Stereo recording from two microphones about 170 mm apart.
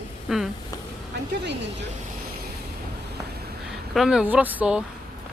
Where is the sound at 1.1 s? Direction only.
80° right.